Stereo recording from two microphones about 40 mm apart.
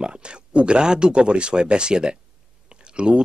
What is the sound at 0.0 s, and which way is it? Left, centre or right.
Speech, right.